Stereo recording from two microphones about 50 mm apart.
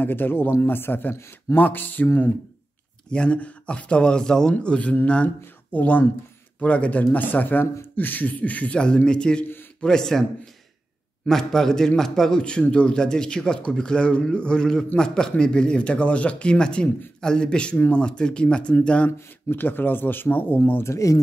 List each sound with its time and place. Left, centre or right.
0.0 s speech: left
3.1 s a man's voice: left
11.2 s a man's voice: centre; by 19.1 s left
19.5 s speech: left
20.8 s speech: left